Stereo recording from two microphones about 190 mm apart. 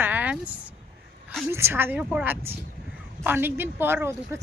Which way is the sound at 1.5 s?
15° right (ahead or behind).